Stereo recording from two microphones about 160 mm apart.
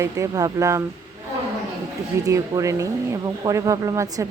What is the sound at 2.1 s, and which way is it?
Speech, 20° right (ahead or behind).